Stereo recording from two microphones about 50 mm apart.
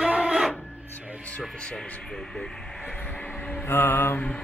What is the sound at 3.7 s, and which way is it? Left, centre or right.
Mantra, left.